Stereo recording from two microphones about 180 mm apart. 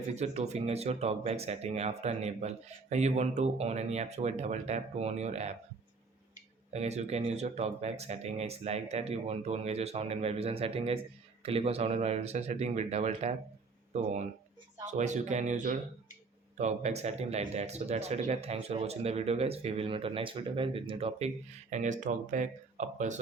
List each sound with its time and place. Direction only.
0.1 s speech: 40° right (ahead or behind)
6.7 s speech: 35° right (ahead or behind)